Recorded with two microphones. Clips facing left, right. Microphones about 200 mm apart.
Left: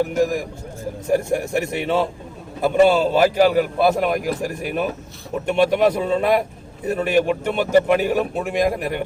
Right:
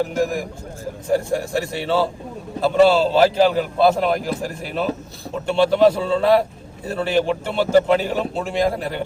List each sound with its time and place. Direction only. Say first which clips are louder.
1.1 s a man's voice: even; 20° left (ahead or behind)